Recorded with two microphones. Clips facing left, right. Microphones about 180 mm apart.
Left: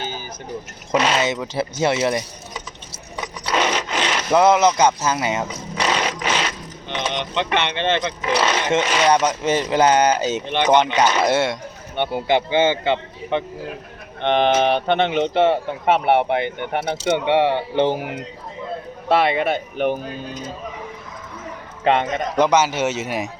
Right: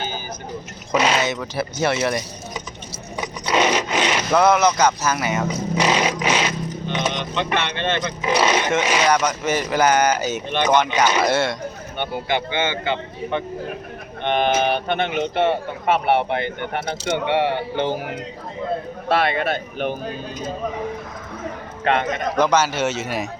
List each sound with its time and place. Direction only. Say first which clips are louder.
0.9 s speech: even; 5° right (ahead or behind)
1.2 s speech: left 2 dB; 20° left (ahead or behind)
3.2 s zipper: right 2 dB; 15° right (ahead or behind)
3.6 s wood: right 3 dB; 10° right (ahead or behind)
4.3 s speech: left 2 dB; 25° left (ahead or behind)
5.8 s a sound: right 1 dB; 10° right (ahead or behind)
6.8 s a man's voice: left 1 dB; 20° left (ahead or behind)
21.8 s a man's voice: left 2 dB; 25° left (ahead or behind)